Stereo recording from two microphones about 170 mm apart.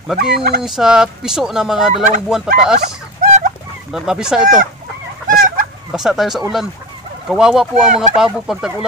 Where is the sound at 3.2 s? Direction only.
45° right (ahead or behind).